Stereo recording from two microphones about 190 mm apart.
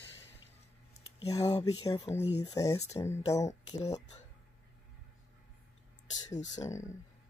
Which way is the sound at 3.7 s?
35° left (ahead or behind).